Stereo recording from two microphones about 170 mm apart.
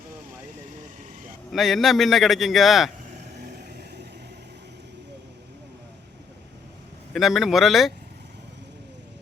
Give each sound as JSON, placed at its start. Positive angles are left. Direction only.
{"t": 1.5, "sound": "a man's voice", "side_deg": 0}
{"t": 3.4, "sound": "vehicle", "side_deg": -65}
{"t": 7.1, "sound": "a man's voice", "side_deg": 0}